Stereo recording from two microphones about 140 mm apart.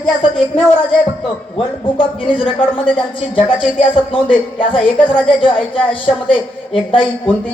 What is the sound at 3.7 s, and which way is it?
Speech, 40° left (ahead or behind).